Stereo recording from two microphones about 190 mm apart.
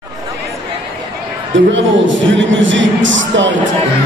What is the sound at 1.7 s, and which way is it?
A man's voice, 75° right (ahead or behind).